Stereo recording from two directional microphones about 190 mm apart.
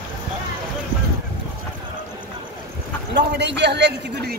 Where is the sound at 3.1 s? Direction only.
60° right (ahead or behind).